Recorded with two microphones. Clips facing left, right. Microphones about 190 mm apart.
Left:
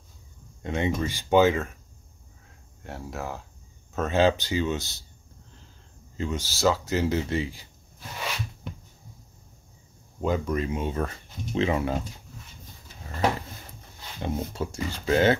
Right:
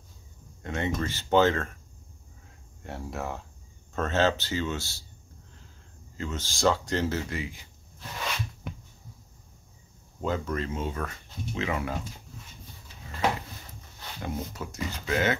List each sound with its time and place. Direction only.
0.6 s speech: 15° left (ahead or behind)
2.8 s speech: centre (ahead or behind); by 5.0 s 20° left (ahead or behind)
6.1 s speech: 15° left (ahead or behind)
7.1 s speech: 20° left (ahead or behind)
10.2 s speech: 15° left (ahead or behind)
11.0 s speech: 30° left (ahead or behind)
14.2 s speech: 30° left (ahead or behind)